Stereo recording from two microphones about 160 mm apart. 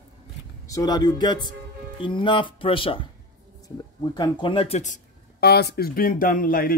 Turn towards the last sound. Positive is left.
turn(degrees=60)  # may be behind; listen again after turning